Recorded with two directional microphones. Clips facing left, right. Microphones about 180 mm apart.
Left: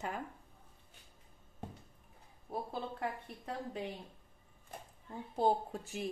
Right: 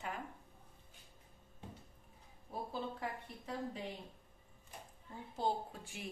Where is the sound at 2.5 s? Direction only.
60° left (ahead or behind).